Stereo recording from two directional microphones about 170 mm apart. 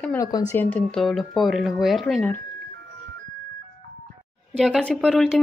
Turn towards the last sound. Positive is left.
turn(degrees=0)  # may be behind; listen again after turning